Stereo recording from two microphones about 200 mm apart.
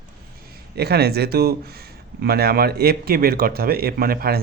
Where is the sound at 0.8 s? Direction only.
55° right (ahead or behind).